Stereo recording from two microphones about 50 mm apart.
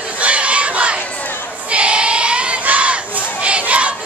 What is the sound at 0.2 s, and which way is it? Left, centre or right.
Crowd, right.